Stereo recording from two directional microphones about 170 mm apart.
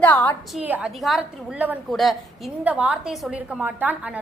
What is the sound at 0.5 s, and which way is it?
A woman's voice, 10° right (ahead or behind).